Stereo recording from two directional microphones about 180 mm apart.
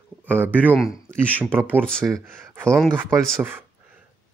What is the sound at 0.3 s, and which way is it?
Speech, 10° right (ahead or behind).